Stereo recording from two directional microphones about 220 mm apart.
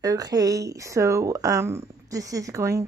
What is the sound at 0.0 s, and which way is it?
Speech, 15° right (ahead or behind).